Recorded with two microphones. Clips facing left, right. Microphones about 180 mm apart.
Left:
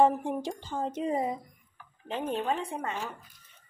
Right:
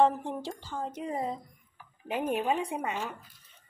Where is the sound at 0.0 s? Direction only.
10° left (ahead or behind).